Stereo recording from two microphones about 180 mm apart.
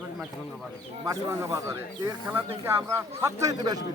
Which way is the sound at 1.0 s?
20° right (ahead or behind).